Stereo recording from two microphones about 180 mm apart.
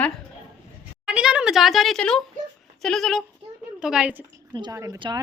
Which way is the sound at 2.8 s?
Centre (ahead or behind).